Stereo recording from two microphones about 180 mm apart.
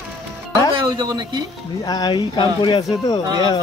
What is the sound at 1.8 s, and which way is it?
Speech, 25° left (ahead or behind).